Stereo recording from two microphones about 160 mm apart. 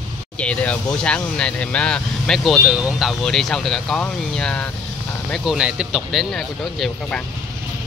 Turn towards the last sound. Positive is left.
turn(degrees=5)  # may be behind; listen again after turning